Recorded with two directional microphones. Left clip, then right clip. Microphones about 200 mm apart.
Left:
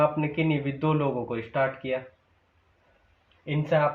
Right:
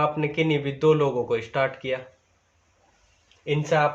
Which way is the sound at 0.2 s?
40° right (ahead or behind).